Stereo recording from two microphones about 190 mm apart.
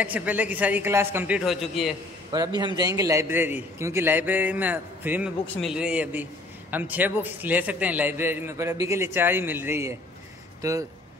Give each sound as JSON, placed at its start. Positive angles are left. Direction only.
{"t": 0.0, "sound": "a man's voice", "side_deg": -10}
{"t": 2.3, "sound": "a man's voice", "side_deg": -20}